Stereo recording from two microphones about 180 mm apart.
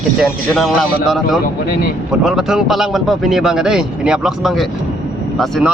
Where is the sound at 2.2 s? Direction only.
Centre (ahead or behind).